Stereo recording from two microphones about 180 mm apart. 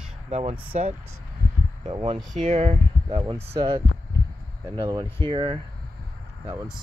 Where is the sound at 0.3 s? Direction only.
30° right (ahead or behind).